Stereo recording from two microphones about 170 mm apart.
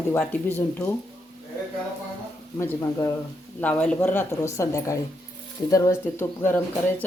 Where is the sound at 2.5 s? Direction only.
15° left (ahead or behind).